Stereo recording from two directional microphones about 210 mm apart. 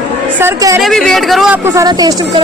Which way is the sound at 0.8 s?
Centre (ahead or behind).